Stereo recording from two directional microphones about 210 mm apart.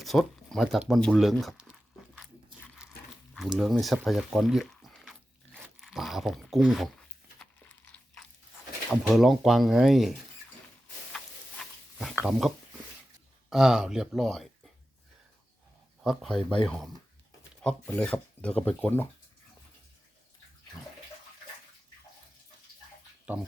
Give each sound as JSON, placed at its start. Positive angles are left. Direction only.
{"t": 0.0, "sound": "speech", "side_deg": 0}
{"t": 2.1, "sound": "biting", "side_deg": 0}
{"t": 3.6, "sound": "speech", "side_deg": 0}
{"t": 8.9, "sound": "speech", "side_deg": 0}
{"t": 11.6, "sound": "a sound", "side_deg": 0}
{"t": 13.5, "sound": "speech", "side_deg": 0}
{"t": 16.0, "sound": "speech", "side_deg": 0}
{"t": 16.4, "sound": "speech", "side_deg": 25}
{"t": 16.6, "sound": "speech", "side_deg": 5}